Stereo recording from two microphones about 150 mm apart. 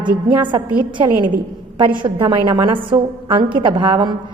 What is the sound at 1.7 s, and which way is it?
A woman's voice, 30° right (ahead or behind).